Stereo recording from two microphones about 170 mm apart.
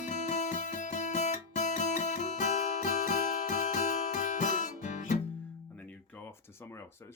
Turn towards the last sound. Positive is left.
turn(degrees=15)  # may be behind; listen again after turning